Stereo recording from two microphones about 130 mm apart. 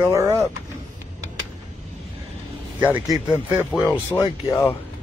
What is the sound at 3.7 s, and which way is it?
Speech, centre (ahead or behind).